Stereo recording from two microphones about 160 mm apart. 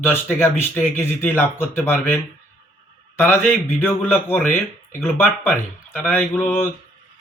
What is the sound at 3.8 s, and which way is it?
Speech, 15° left (ahead or behind).